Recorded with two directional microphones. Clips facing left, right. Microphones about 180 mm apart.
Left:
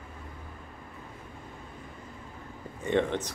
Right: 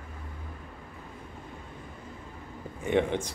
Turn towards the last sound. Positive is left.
turn(degrees=-10)  # may be behind; listen again after turning